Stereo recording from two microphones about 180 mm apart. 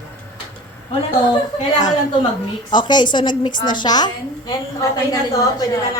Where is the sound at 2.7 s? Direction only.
25° left (ahead or behind).